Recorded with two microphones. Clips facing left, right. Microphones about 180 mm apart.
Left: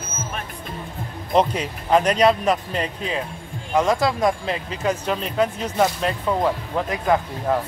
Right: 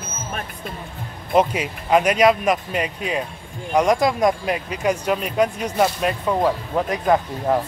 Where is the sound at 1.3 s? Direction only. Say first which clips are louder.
Right 1 dB; 10° right (ahead or behind).